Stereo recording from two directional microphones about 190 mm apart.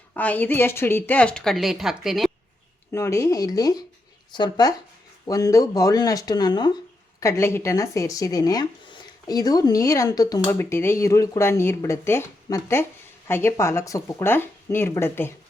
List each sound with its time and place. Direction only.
0.1 s speech: 10° left (ahead or behind)
2.9 s speech: 15° left (ahead or behind)